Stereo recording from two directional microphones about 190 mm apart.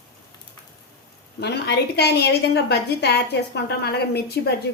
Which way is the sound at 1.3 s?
60° left (ahead or behind).